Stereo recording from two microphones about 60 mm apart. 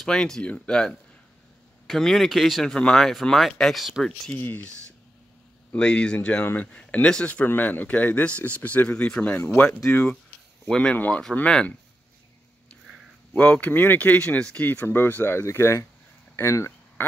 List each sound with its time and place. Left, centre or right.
0.0 s speech: centre
2.6 s speech: centre
4.4 s speech: left
5.8 s speech: centre
6.4 s speech: left
6.7 s speech: centre
7.4 s speech: left
10.7 s speech: centre
13.3 s speech: left
15.4 s speech: left